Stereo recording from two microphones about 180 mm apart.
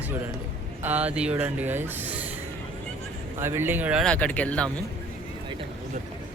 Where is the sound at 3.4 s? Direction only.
10° right (ahead or behind).